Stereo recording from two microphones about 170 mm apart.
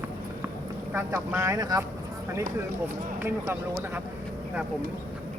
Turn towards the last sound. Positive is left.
turn(degrees=-15)  # may be behind; listen again after turning